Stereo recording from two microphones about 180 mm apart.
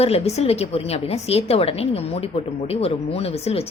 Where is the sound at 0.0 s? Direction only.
35° left (ahead or behind).